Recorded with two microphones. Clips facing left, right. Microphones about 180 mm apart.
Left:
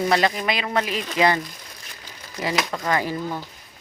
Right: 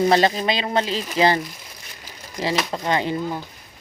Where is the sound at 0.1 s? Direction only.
30° right (ahead or behind).